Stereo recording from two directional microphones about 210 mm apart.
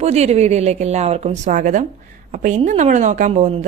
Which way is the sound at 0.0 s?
30° right (ahead or behind).